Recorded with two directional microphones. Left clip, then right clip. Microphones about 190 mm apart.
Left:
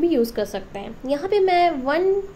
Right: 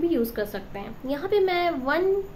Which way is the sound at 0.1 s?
15° left (ahead or behind).